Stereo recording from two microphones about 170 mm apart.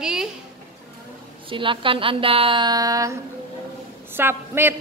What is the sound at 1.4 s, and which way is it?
A woman's voice, 30° right (ahead or behind).